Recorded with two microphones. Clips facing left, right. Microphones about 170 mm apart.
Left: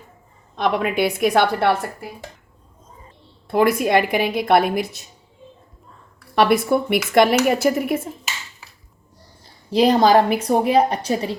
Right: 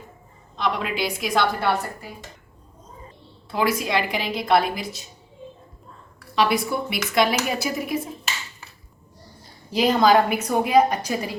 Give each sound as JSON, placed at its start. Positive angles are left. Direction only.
{"t": 0.5, "sound": "a woman's voice", "side_deg": 55}
{"t": 3.5, "sound": "a woman's voice", "side_deg": 55}
{"t": 6.3, "sound": "a woman's voice", "side_deg": 55}
{"t": 9.7, "sound": "a woman's voice", "side_deg": 35}